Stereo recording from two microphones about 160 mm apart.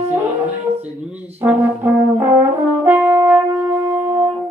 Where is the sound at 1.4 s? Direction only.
10° right (ahead or behind).